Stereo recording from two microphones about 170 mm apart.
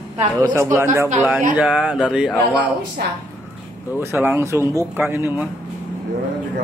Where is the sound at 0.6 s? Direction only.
15° right (ahead or behind).